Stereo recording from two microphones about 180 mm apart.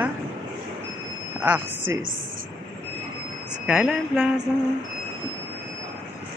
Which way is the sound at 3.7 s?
5° right (ahead or behind).